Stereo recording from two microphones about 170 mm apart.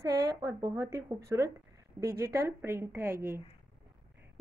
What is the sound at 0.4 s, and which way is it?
Speech, 20° right (ahead or behind).